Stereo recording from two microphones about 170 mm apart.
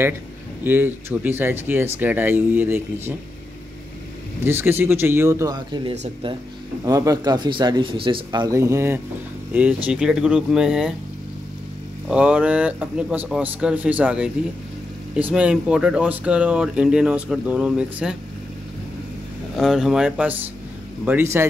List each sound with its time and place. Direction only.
0.7 s speech: 10° right (ahead or behind)
4.5 s speech: 15° right (ahead or behind)
12.1 s speech: 5° right (ahead or behind)
19.5 s speech: centre (ahead or behind)